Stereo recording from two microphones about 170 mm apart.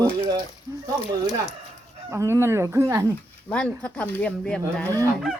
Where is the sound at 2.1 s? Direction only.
15° right (ahead or behind).